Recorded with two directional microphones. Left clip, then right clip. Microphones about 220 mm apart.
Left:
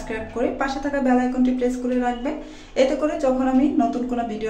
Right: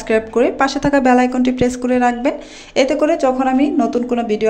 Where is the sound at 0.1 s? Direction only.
40° right (ahead or behind).